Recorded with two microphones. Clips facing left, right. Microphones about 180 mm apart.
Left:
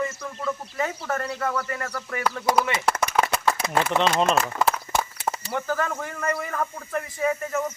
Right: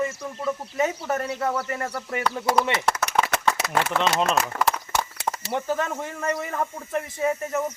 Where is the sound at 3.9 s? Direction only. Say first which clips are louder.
Left 2 dB; centre (ahead or behind).